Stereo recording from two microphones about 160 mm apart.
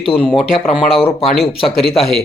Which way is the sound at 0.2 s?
10° right (ahead or behind).